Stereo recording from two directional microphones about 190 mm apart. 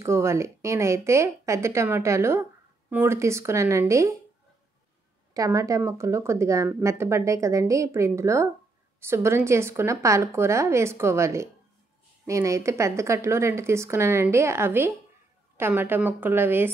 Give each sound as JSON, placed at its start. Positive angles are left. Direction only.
{"t": 0.0, "sound": "speech", "side_deg": -15}
{"t": 5.3, "sound": "speech", "side_deg": -20}